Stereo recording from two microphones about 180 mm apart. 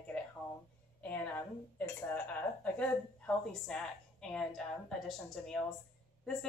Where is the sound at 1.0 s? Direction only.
10° left (ahead or behind).